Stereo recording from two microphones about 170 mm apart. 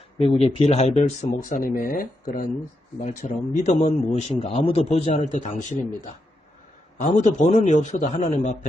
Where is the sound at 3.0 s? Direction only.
45° left (ahead or behind).